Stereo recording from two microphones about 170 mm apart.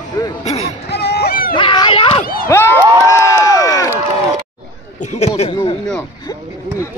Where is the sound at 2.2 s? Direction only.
60° left (ahead or behind).